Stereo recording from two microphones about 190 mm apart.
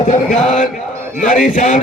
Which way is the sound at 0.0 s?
40° left (ahead or behind).